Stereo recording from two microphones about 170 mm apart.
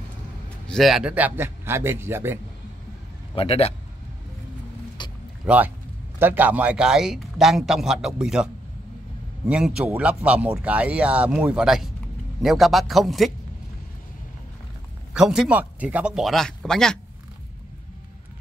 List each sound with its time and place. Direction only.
0.7 s speech: centre (ahead or behind)
3.3 s a man's voice: 35° left (ahead or behind)
5.0 s a sound: 25° left (ahead or behind)
5.5 s a man's voice: 5° right (ahead or behind)
9.5 s a man's voice: 5° right (ahead or behind)
15.1 s a man's voice: 5° right (ahead or behind)